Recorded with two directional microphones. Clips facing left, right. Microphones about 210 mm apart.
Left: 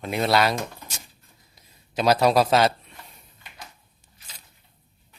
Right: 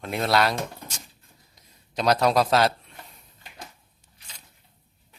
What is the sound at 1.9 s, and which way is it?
Speech, 5° left (ahead or behind).